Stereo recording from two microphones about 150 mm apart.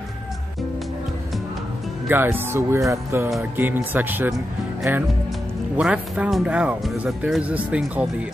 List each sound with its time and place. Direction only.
2.0 s speech: 15° right (ahead or behind)